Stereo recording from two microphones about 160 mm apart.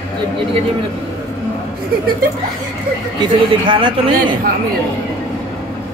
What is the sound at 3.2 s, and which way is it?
A man's voice, 30° right (ahead or behind).